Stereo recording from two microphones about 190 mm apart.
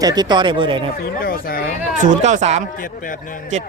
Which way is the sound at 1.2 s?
50° left (ahead or behind).